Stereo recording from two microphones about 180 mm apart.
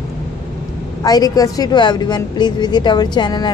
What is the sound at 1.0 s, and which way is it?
A woman's voice, 20° left (ahead or behind).